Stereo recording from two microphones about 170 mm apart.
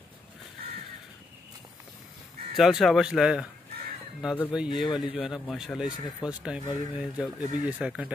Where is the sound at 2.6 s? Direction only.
Centre (ahead or behind).